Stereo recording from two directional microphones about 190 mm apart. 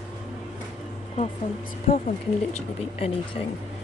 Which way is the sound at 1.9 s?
35° left (ahead or behind).